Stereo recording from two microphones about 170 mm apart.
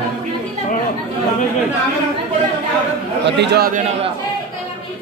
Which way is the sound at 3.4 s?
75° right (ahead or behind).